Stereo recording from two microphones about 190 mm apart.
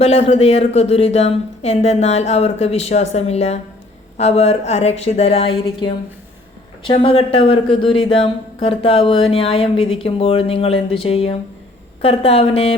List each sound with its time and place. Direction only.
0.0 s speech: 35° left (ahead or behind)